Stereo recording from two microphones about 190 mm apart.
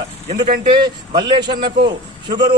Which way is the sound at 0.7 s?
25° right (ahead or behind).